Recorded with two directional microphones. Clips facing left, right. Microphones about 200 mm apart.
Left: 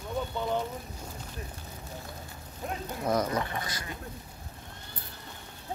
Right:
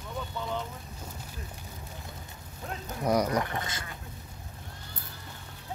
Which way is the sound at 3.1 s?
10° right (ahead or behind).